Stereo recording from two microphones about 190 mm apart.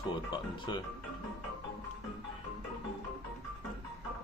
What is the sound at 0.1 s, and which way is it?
Speech, 25° left (ahead or behind).